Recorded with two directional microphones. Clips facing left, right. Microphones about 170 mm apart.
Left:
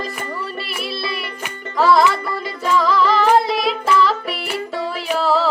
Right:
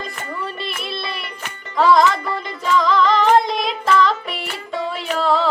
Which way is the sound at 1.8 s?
5° left (ahead or behind).